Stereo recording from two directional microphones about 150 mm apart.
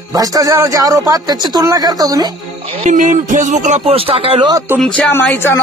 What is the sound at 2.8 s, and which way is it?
Speech, 55° right (ahead or behind).